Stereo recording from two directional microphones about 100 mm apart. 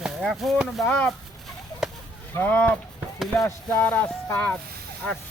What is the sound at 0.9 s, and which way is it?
Music, 15° left (ahead or behind).